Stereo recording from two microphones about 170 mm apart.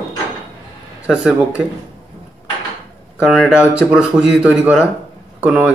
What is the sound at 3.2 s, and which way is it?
Speech, 5° right (ahead or behind).